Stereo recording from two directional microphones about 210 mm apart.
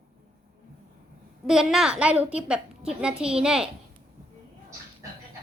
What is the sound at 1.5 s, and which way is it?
A woman's voice, centre (ahead or behind).